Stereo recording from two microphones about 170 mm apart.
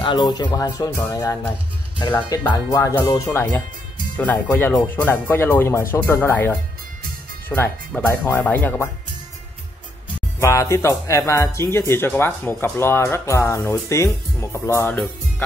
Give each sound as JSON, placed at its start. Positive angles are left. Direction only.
{"t": 0.0, "sound": "speech", "side_deg": 25}
{"t": 10.4, "sound": "speech", "side_deg": 15}